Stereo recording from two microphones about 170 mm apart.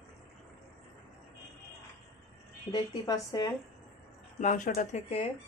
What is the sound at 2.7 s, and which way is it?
Speech, 25° left (ahead or behind).